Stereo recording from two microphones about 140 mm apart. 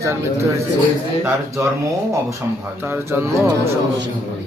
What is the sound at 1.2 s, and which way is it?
Speech, 20° right (ahead or behind).